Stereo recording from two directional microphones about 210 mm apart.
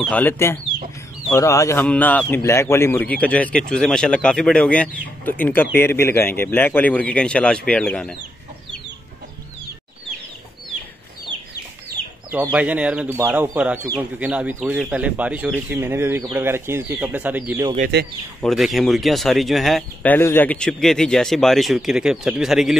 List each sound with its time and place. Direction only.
0.0 s a man's voice: 10° left (ahead or behind)
12.4 s speech: 5° right (ahead or behind)
17.7 s speech: 45° right (ahead or behind)
18.4 s speech: centre (ahead or behind)